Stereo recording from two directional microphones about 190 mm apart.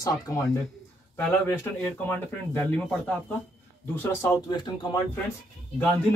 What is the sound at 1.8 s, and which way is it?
Speech, 10° left (ahead or behind).